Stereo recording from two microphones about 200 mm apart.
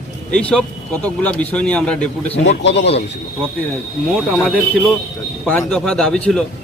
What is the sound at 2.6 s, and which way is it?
Speech, 60° left (ahead or behind).